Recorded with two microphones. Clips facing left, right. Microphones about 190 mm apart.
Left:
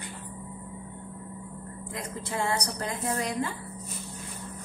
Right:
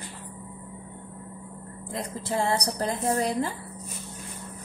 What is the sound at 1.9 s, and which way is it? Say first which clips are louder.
A woman's voice: right 5 dB; 35° right (ahead or behind).